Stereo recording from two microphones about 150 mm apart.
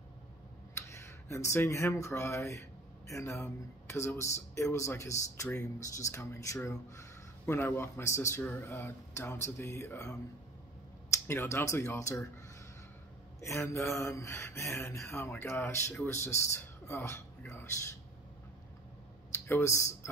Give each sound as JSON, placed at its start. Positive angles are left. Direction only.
{"t": 0.8, "sound": "speech", "side_deg": 20}
{"t": 11.2, "sound": "speech", "side_deg": 15}
{"t": 13.4, "sound": "speech", "side_deg": 20}
{"t": 19.3, "sound": "speech", "side_deg": 15}